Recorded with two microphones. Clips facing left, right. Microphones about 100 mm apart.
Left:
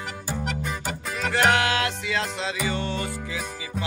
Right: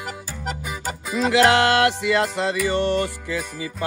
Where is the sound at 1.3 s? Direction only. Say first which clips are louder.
Right 5 dB; 90° right; by 3.0 s 75° right (ahead or behind).